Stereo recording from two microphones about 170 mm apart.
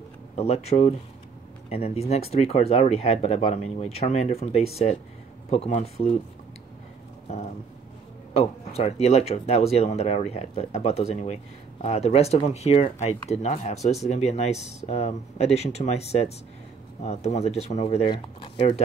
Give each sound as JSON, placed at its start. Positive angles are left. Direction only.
{"t": 0.4, "sound": "speech", "side_deg": 40}
{"t": 7.3, "sound": "speech", "side_deg": 40}